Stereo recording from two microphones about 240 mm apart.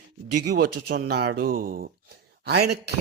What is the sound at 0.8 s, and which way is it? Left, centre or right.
Speech, right.